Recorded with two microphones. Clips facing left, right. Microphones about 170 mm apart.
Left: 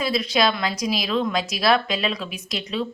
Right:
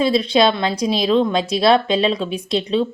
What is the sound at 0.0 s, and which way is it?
Speech, 30° right (ahead or behind).